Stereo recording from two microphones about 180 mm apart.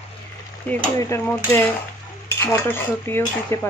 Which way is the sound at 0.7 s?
10° left (ahead or behind).